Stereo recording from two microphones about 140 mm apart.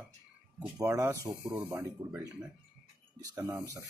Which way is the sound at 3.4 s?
20° right (ahead or behind).